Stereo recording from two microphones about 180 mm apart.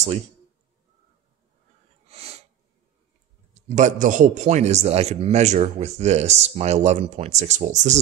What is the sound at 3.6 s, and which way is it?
A man's voice, 40° right (ahead or behind).